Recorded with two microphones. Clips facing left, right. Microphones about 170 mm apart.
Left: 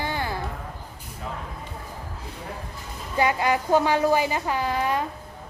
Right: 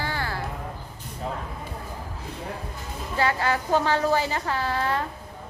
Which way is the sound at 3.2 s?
15° left (ahead or behind).